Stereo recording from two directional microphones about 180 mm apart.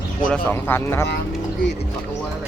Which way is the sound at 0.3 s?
5° left (ahead or behind).